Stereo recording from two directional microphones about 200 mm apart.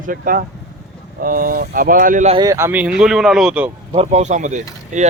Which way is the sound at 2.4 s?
15° right (ahead or behind).